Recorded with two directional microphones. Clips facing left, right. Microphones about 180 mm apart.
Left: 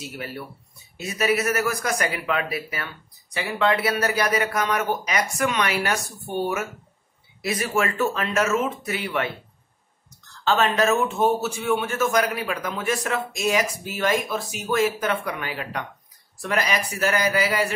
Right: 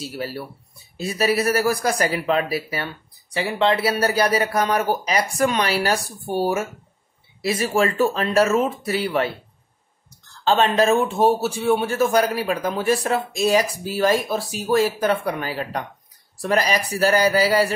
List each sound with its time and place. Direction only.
0.0 s a man's voice: 30° right (ahead or behind)
10.4 s a man's voice: 30° right (ahead or behind)